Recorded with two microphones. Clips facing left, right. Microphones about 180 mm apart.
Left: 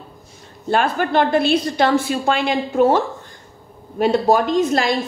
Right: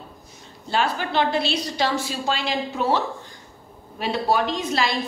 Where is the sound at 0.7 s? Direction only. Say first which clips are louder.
Left 6 dB; 50° left (ahead or behind).